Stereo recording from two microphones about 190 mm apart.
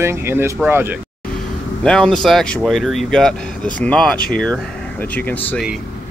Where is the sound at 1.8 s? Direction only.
5° left (ahead or behind).